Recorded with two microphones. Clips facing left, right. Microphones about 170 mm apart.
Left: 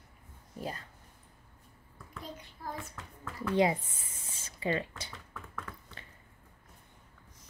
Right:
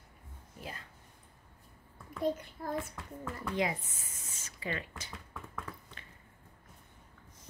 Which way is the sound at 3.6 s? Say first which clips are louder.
Left 7 dB; 30° left (ahead or behind).